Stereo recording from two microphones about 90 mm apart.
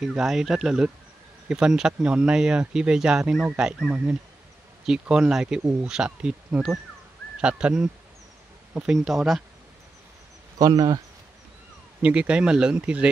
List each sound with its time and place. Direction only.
0.0 s speech: 5° right (ahead or behind)
5.6 s speech: 20° right (ahead or behind)
5.9 s speech: 10° right (ahead or behind)
10.6 s speech: 45° right (ahead or behind)
12.0 s speech: 15° right (ahead or behind)